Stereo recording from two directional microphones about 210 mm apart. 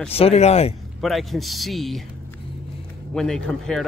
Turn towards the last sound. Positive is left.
turn(degrees=0)  # may be behind; listen again after turning